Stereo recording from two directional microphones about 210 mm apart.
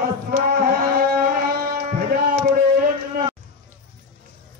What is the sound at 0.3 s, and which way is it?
Music, 45° right (ahead or behind).